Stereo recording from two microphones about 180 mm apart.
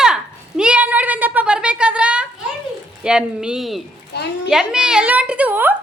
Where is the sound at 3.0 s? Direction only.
5° right (ahead or behind).